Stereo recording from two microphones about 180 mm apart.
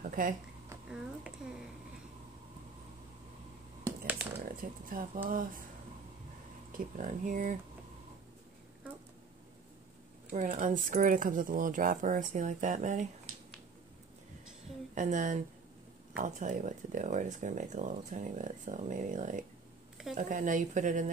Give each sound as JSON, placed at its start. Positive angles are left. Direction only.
{"t": 0.0, "sound": "a sound", "side_deg": -50}
{"t": 0.8, "sound": "speech", "side_deg": -5}
{"t": 4.5, "sound": "speech", "side_deg": -50}
{"t": 6.7, "sound": "speech", "side_deg": -50}
{"t": 10.3, "sound": "speech", "side_deg": -45}
{"t": 15.0, "sound": "speech", "side_deg": -45}